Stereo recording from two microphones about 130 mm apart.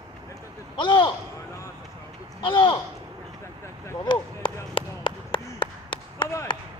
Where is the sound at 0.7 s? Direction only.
40° left (ahead or behind).